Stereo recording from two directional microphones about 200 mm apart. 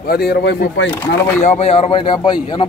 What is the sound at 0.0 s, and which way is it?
Speech, 50° left (ahead or behind).